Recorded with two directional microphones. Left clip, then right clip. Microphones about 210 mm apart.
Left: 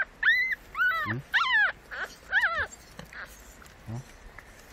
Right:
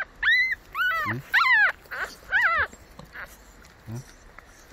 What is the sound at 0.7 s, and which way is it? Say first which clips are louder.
Dog: right 1 dB; 40° right (ahead or behind).